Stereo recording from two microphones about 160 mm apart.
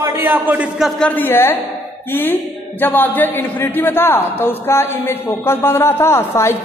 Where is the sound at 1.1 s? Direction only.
15° left (ahead or behind).